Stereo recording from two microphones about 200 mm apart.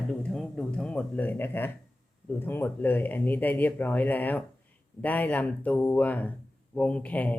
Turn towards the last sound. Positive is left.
turn(degrees=10)  # may be behind; listen again after turning